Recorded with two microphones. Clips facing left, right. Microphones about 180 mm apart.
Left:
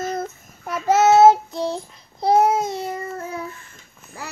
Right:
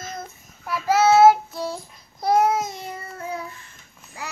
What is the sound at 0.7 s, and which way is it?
Child singing, 20° left (ahead or behind).